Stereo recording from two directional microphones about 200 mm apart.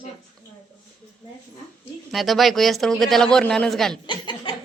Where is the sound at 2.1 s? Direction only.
Centre (ahead or behind).